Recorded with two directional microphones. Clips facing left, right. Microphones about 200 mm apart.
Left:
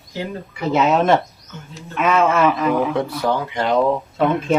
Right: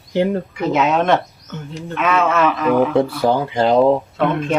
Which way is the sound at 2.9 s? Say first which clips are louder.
Right 4 dB; 30° right (ahead or behind).